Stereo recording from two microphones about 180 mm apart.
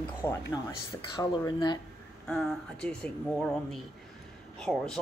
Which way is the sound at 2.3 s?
5° left (ahead or behind).